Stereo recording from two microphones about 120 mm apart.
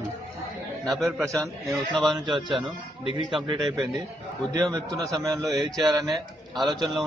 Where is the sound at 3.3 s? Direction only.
40° right (ahead or behind).